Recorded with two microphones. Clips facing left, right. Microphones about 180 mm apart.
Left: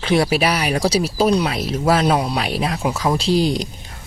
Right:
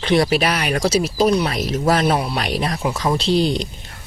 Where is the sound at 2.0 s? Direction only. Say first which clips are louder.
Left 1 dB; 15° left (ahead or behind).